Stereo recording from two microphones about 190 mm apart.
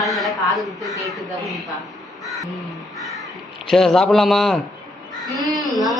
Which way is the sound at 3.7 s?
Centre (ahead or behind).